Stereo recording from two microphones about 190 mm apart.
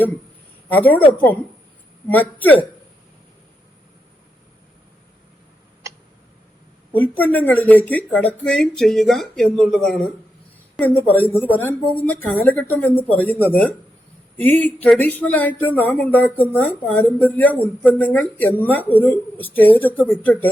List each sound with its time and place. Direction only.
0.7 s speech: 10° left (ahead or behind)
2.0 s speech: 10° left (ahead or behind)
6.9 s speech: 10° left (ahead or behind)